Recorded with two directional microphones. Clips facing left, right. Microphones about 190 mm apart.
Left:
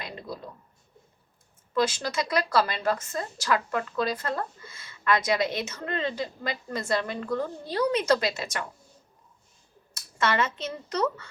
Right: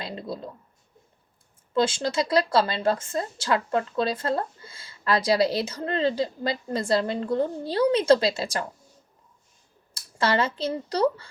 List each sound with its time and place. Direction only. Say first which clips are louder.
0.0 s a sound: right 4 dB; 30° right (ahead or behind)
1.7 s a woman's voice: right 3 dB; 30° right (ahead or behind)
9.9 s speech: right 3 dB; 30° right (ahead or behind)